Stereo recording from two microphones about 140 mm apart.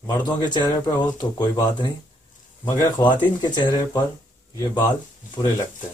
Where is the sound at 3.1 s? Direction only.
30° left (ahead or behind).